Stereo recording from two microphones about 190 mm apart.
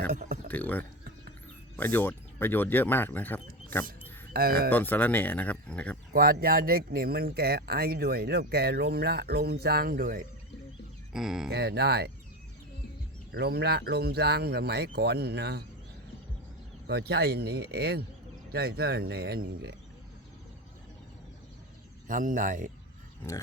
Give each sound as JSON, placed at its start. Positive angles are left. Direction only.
{"t": 0.1, "sound": "a sound", "side_deg": -50}
{"t": 0.4, "sound": "speech", "side_deg": 10}
{"t": 4.3, "sound": "speech", "side_deg": -50}
{"t": 4.7, "sound": "speech", "side_deg": 10}
{"t": 6.1, "sound": "speech", "side_deg": -50}
{"t": 11.1, "sound": "speech", "side_deg": 0}
{"t": 11.5, "sound": "speech", "side_deg": -60}
{"t": 13.3, "sound": "speech", "side_deg": -60}
{"t": 16.8, "sound": "speech", "side_deg": -60}
{"t": 22.0, "sound": "speech", "side_deg": -45}